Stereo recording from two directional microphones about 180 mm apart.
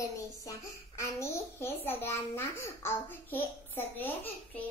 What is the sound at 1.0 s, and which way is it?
A child's voice, 15° left (ahead or behind).